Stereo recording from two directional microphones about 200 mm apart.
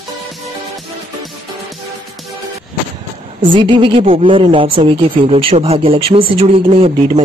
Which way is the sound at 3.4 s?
25° right (ahead or behind).